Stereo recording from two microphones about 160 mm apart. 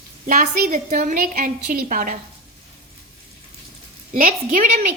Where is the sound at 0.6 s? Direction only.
50° right (ahead or behind).